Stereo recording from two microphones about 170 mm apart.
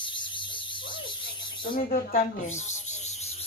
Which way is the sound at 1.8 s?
60° left (ahead or behind).